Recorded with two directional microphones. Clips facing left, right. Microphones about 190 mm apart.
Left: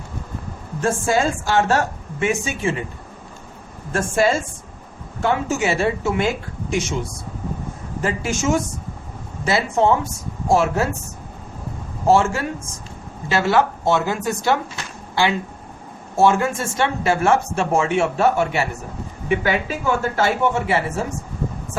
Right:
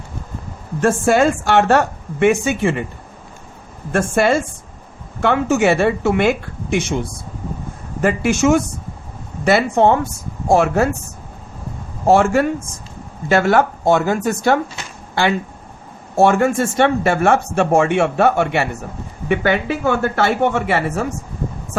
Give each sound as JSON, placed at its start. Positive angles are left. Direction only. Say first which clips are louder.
{"t": 0.8, "sound": "speech", "louder": "right 5 dB", "side_deg": -65}
{"t": 3.9, "sound": "speech", "louder": "right 3 dB", "side_deg": -60}
{"t": 8.0, "sound": "speech", "louder": "right 7 dB", "side_deg": -65}
{"t": 12.0, "sound": "speech", "louder": "right 4 dB", "side_deg": -60}